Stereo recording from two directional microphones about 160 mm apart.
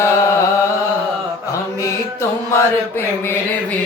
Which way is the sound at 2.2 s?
15° left (ahead or behind).